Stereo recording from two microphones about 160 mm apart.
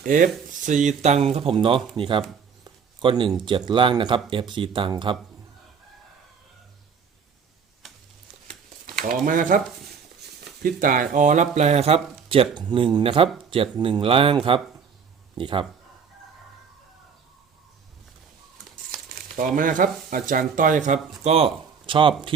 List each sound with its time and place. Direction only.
0.0 s speech: 55° right (ahead or behind); by 2.2 s 30° right (ahead or behind)
2.6 s a sound: 30° right (ahead or behind)
3.7 s speech: 30° right (ahead or behind)
9.0 s speech: 60° right (ahead or behind)
10.6 s speech: 60° right (ahead or behind); by 11.9 s 40° right (ahead or behind)
12.5 s speech: 30° right (ahead or behind)
13.2 s speech: centre (ahead or behind)
13.5 s speech: 35° right (ahead or behind)
19.4 s speech: 55° right (ahead or behind)
21.2 s speech: 40° right (ahead or behind)